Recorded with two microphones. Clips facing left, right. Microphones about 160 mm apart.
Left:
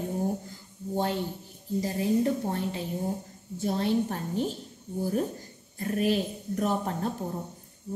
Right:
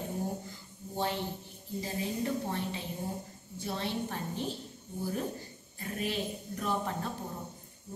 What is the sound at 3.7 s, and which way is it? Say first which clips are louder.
Speech: left 8 dB; 45° left (ahead or behind).